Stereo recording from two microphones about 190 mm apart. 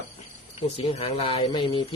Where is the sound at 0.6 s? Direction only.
30° left (ahead or behind).